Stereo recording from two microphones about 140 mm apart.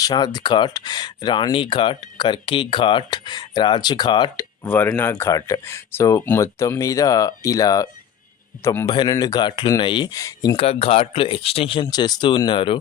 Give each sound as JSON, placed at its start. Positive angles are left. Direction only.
{"t": 0.0, "sound": "speech", "side_deg": 30}
{"t": 4.6, "sound": "speech", "side_deg": 15}
{"t": 8.9, "sound": "speech", "side_deg": 30}
{"t": 10.6, "sound": "speech", "side_deg": 45}
{"t": 11.9, "sound": "speech", "side_deg": 30}